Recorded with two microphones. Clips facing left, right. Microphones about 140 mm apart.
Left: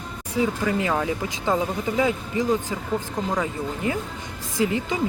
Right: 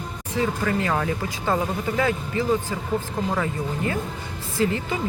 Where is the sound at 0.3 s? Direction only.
15° left (ahead or behind).